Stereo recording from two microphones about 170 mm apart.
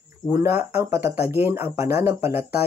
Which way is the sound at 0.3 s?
15° right (ahead or behind).